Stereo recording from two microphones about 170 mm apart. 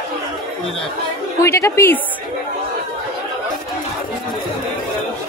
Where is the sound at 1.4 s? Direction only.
15° left (ahead or behind).